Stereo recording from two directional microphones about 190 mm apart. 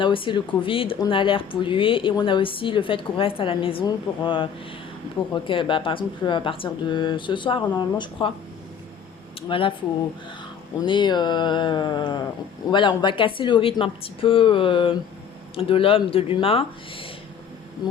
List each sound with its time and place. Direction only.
0.0 s speech: 25° left (ahead or behind)
9.5 s speech: 25° left (ahead or behind)
10.8 s speech: 25° left (ahead or behind)